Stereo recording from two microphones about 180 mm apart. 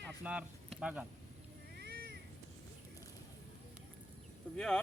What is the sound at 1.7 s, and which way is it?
Cat, 60° right (ahead or behind).